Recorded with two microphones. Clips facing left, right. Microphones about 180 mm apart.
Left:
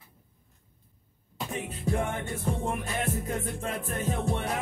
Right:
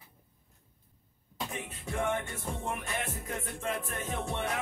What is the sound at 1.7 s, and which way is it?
Music, 35° left (ahead or behind).